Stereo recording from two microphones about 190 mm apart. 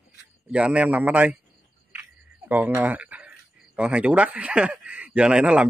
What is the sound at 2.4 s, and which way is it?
Speech, 10° right (ahead or behind).